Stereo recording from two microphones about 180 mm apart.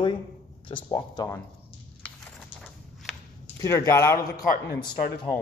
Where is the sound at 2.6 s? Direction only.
Centre (ahead or behind).